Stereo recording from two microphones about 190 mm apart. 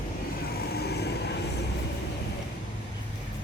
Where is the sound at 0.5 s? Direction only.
55° left (ahead or behind).